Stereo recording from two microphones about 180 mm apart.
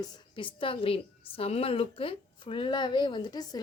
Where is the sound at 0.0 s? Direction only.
25° left (ahead or behind).